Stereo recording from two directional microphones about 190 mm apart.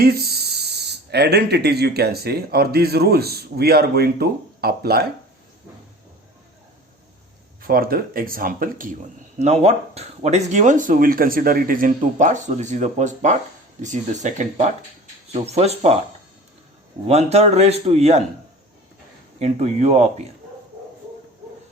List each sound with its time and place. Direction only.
0.0 s speech: 55° right (ahead or behind)
7.6 s speech: 50° right (ahead or behind)
9.4 s speech: 35° right (ahead or behind)
17.1 s speech: 35° right (ahead or behind)
19.4 s speech: 35° right (ahead or behind)